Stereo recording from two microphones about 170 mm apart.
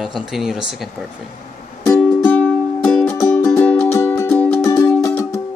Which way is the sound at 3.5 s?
5° left (ahead or behind).